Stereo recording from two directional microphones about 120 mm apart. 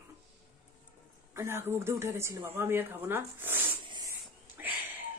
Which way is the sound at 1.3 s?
20° right (ahead or behind).